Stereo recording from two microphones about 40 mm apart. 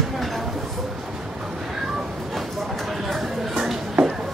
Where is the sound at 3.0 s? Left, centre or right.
Centre.